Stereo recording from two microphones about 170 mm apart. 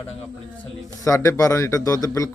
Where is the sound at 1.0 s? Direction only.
20° left (ahead or behind).